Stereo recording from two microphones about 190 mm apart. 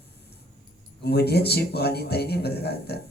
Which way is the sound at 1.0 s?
60° left (ahead or behind).